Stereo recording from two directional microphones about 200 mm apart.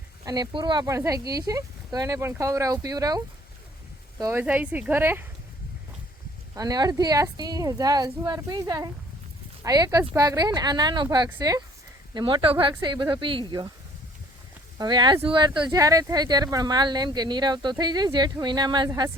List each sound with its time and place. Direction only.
0.3 s speech: 20° right (ahead or behind)
4.2 s speech: 10° right (ahead or behind)
6.5 s speech: 20° right (ahead or behind)
14.8 s speech: 20° right (ahead or behind)